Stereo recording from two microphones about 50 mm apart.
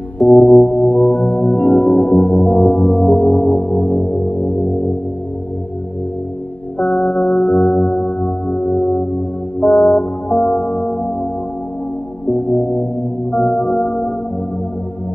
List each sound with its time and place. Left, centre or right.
0.2 s music: left
6.8 s music: left
12.3 s music: left